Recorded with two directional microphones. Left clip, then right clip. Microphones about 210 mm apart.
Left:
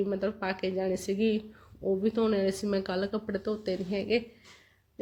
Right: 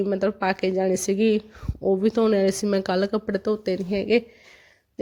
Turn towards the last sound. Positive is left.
turn(degrees=-50)  # may be behind; listen again after turning